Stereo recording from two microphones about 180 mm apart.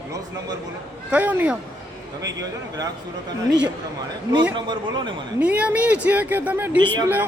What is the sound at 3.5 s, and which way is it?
Speech, 5° right (ahead or behind).